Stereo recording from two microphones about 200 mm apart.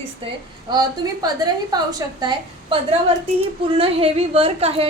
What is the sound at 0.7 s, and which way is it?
A woman's voice, 20° right (ahead or behind).